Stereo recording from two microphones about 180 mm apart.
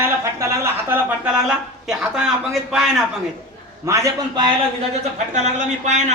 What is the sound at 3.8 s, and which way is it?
Speech, 15° right (ahead or behind).